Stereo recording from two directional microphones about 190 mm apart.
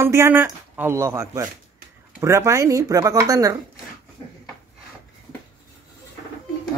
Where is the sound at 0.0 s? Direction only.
15° right (ahead or behind).